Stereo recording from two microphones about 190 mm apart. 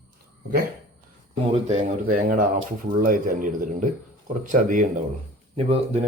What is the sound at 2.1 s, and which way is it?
Speech, 45° right (ahead or behind).